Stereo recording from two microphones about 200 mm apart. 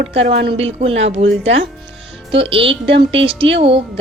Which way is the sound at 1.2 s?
65° right (ahead or behind).